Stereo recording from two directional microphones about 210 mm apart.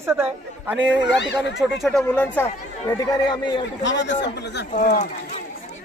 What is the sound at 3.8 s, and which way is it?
Speech, 60° left (ahead or behind).